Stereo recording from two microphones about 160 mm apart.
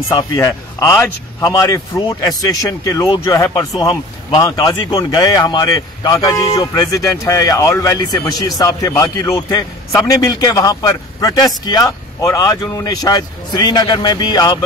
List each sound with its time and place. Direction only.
0.4 s speech: 15° left (ahead or behind)